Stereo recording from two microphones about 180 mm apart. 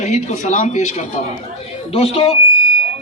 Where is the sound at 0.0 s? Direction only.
40° left (ahead or behind).